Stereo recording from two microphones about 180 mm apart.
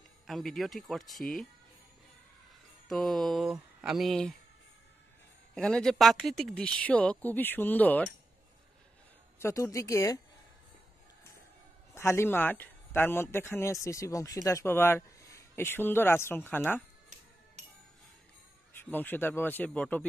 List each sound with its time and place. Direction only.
0.3 s speech: centre (ahead or behind)
2.9 s speech: centre (ahead or behind)
5.5 s speech: 5° left (ahead or behind)
9.4 s speech: 15° left (ahead or behind)
11.9 s speech: 15° left (ahead or behind)
17.6 s music: 40° right (ahead or behind)
18.7 s speech: 10° left (ahead or behind)